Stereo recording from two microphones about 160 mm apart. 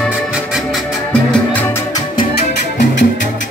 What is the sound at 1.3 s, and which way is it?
Music, 10° left (ahead or behind).